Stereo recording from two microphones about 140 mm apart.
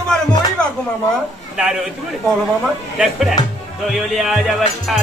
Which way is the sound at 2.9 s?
Centre (ahead or behind).